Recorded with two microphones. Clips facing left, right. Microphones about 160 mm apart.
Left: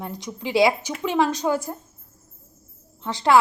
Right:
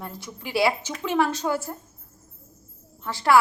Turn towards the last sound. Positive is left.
turn(degrees=20)  # may be behind; listen again after turning